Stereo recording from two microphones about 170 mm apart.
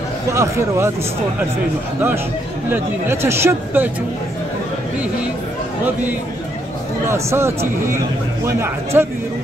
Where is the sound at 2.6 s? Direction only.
15° right (ahead or behind).